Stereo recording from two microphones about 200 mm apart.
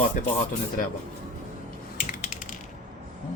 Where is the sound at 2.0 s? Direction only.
40° left (ahead or behind).